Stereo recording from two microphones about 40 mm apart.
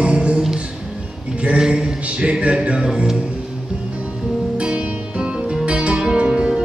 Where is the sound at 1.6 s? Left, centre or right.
Right.